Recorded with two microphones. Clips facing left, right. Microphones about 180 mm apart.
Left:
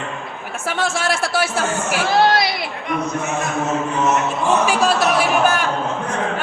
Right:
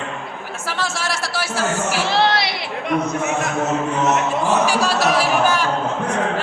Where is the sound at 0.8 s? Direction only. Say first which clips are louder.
Left 5 dB; 55° left (ahead or behind).